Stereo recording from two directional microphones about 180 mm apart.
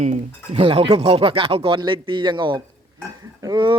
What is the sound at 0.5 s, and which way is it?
Speech, 30° right (ahead or behind).